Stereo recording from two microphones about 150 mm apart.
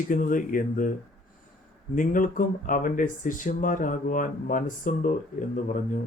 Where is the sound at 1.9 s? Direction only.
60° left (ahead or behind).